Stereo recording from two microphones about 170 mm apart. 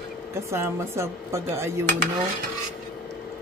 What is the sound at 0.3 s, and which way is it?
A woman's voice, 15° right (ahead or behind).